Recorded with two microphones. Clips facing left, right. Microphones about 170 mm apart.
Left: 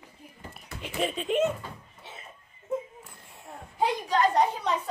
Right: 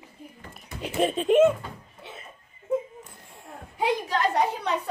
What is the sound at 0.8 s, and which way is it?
Speech, 40° right (ahead or behind).